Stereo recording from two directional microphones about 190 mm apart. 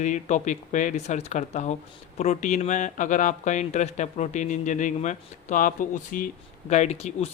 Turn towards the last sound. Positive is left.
turn(degrees=35)  # may be behind; listen again after turning